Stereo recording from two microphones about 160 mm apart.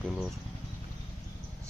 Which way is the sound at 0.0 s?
Centre (ahead or behind).